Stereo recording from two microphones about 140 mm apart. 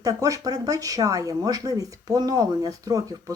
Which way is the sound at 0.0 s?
25° right (ahead or behind).